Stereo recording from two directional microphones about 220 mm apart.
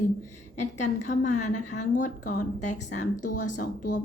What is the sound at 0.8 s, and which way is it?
A woman's voice, 35° left (ahead or behind).